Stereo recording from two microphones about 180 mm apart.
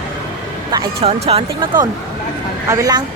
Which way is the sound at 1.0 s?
35° right (ahead or behind).